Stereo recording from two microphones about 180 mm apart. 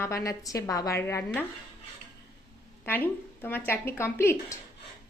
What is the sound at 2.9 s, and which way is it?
A woman's voice, 10° left (ahead or behind).